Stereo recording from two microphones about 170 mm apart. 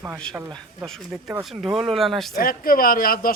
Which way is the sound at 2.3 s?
60° left (ahead or behind).